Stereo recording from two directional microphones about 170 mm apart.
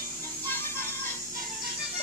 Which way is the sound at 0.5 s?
15° left (ahead or behind).